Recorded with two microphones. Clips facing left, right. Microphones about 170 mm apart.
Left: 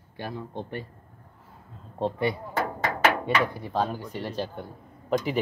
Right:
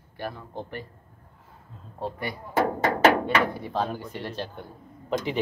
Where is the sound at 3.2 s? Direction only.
10° left (ahead or behind).